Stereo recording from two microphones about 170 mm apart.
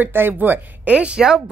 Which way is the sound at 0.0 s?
10° right (ahead or behind).